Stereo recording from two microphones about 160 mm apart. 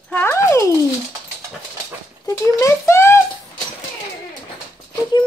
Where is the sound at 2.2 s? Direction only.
20° left (ahead or behind).